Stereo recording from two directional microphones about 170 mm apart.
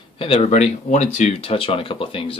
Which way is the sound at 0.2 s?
40° left (ahead or behind).